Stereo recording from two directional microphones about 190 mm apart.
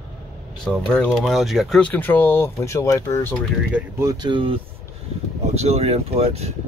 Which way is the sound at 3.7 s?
15° right (ahead or behind).